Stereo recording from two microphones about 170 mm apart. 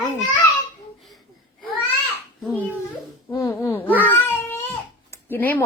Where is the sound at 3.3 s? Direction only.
20° left (ahead or behind).